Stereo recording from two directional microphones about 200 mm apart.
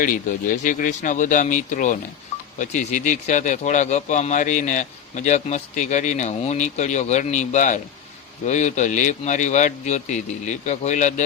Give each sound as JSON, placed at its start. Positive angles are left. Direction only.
{"t": 0.0, "sound": "speech", "side_deg": 40}